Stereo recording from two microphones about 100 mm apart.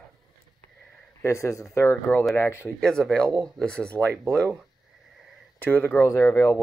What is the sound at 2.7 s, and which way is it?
Speech, 5° left (ahead or behind).